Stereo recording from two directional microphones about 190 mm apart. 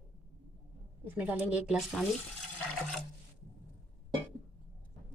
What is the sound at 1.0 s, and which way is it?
Speech, 10° right (ahead or behind).